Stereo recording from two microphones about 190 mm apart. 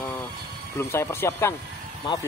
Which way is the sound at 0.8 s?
15° left (ahead or behind).